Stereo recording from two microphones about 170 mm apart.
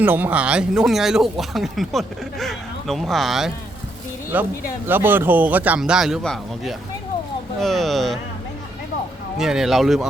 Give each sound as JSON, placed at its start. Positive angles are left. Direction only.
{"t": 0.0, "sound": "speech", "side_deg": -10}
{"t": 9.4, "sound": "speech", "side_deg": 0}